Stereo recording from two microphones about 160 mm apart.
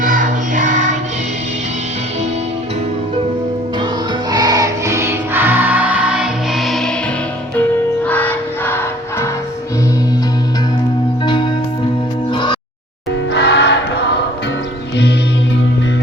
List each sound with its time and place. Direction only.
0.0 s choir: 55° right (ahead or behind)
4.3 s music: 25° right (ahead or behind); by 9.3 s 15° left (ahead or behind)
12.3 s music: 30° left (ahead or behind)
13.3 s music: 90° left